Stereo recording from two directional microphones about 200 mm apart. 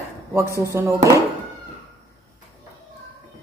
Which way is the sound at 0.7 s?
10° right (ahead or behind).